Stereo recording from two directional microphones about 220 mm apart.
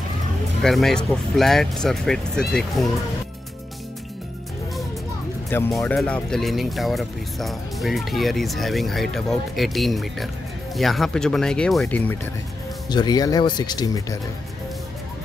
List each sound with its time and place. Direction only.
0.6 s speech: centre (ahead or behind)
5.5 s speech: 10° left (ahead or behind)
12.9 s speech: 20° left (ahead or behind)